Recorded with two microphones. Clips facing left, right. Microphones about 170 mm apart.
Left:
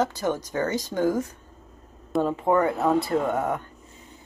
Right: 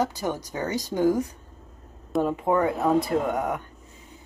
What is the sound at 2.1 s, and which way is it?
Speech, centre (ahead or behind).